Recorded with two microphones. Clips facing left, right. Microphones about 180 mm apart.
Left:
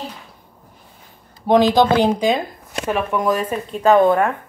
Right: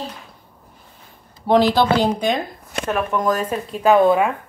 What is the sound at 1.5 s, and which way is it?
Speech, 15° left (ahead or behind).